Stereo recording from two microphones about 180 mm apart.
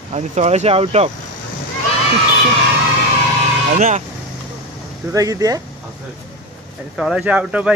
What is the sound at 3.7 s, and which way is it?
Speech, 40° right (ahead or behind).